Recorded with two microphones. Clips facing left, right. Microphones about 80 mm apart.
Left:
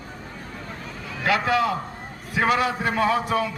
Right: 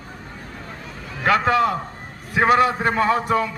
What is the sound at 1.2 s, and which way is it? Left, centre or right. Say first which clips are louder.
A man's voice: right 4 dB; right.